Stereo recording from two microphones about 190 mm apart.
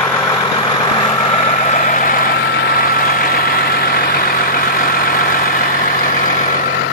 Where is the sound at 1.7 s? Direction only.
40° left (ahead or behind).